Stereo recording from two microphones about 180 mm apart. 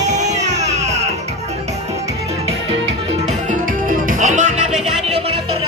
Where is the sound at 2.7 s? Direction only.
30° right (ahead or behind).